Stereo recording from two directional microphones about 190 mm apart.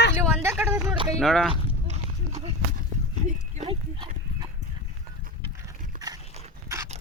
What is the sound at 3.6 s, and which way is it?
Dog, 25° right (ahead or behind).